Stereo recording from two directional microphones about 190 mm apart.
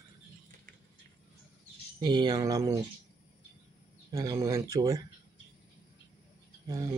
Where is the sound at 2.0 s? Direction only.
20° right (ahead or behind).